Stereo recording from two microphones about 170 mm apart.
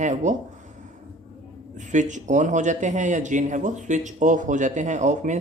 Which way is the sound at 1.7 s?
45° right (ahead or behind).